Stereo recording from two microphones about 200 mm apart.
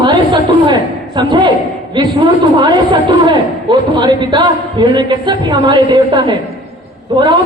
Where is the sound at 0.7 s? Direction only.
20° right (ahead or behind).